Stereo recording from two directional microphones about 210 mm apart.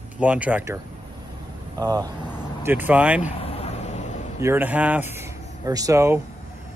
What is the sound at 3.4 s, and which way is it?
Vehicle, 30° left (ahead or behind).